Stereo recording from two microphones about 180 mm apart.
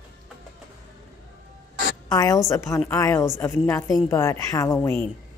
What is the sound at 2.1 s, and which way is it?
A woman's voice, 20° left (ahead or behind).